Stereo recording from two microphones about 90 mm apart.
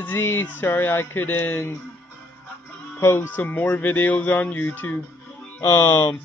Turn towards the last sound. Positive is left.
turn(degrees=30)  # may be behind; listen again after turning